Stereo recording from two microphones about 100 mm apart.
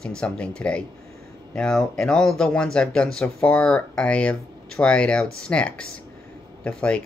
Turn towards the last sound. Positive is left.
turn(degrees=10)  # may be behind; listen again after turning